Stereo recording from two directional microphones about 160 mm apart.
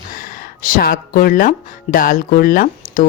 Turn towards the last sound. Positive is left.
turn(degrees=60)  # may be behind; listen again after turning